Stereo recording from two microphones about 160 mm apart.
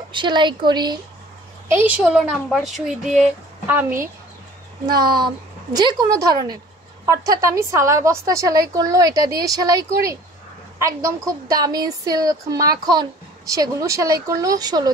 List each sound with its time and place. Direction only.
0.1 s a woman's voice: 30° right (ahead or behind)
1.7 s speech: 10° right (ahead or behind)
4.8 s a woman's voice: 25° right (ahead or behind)